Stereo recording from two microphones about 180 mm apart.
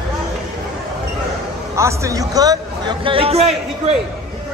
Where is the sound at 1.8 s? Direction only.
15° right (ahead or behind); by 3.9 s 35° right (ahead or behind).